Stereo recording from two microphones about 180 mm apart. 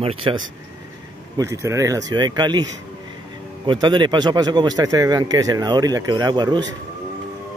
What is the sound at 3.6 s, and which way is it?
Speech, 25° right (ahead or behind).